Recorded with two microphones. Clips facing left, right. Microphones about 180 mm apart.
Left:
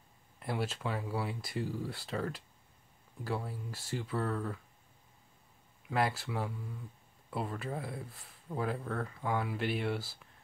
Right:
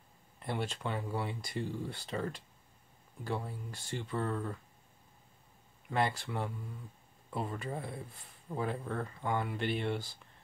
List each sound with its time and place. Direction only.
0.4 s speech: 5° left (ahead or behind)
5.9 s speech: 5° left (ahead or behind)